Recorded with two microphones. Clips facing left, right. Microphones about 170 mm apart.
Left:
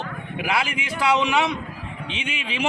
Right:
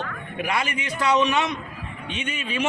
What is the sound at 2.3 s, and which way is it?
Speech, 90° left.